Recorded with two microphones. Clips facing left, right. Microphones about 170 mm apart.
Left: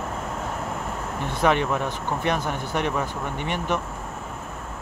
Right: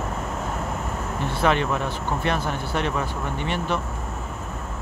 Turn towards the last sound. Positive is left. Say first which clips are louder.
# even
turn(degrees=15)  # may be behind; listen again after turning